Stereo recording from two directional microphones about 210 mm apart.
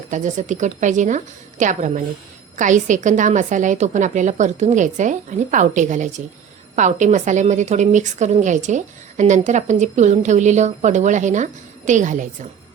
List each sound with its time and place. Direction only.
0.1 s a woman's voice: 35° right (ahead or behind)